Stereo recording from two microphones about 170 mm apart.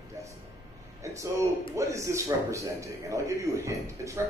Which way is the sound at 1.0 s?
15° right (ahead or behind).